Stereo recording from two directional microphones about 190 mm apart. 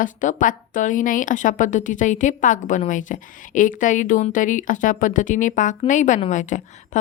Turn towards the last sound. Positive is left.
turn(degrees=40)  # may be behind; listen again after turning